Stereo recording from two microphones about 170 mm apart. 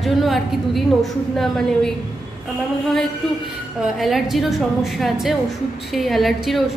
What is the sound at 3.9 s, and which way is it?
A woman's voice, centre (ahead or behind).